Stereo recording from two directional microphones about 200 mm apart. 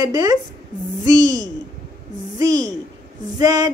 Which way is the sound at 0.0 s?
20° right (ahead or behind).